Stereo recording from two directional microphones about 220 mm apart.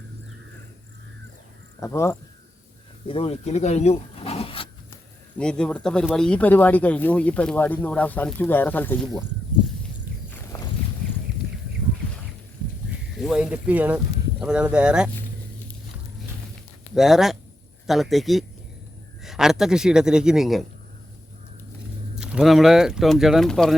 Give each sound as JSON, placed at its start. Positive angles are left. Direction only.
{"t": 1.8, "sound": "speech", "side_deg": 10}
{"t": 3.1, "sound": "speech", "side_deg": 25}
{"t": 5.4, "sound": "speech", "side_deg": 5}
{"t": 13.1, "sound": "speech", "side_deg": 0}
{"t": 16.9, "sound": "speech", "side_deg": 0}
{"t": 22.2, "sound": "speech", "side_deg": -5}